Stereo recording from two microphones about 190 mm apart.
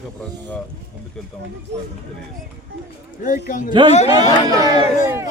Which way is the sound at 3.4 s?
45° left (ahead or behind).